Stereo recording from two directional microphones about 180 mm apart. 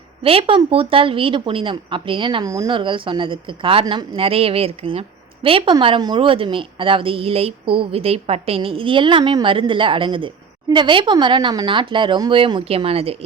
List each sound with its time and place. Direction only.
0.2 s speech: 30° right (ahead or behind)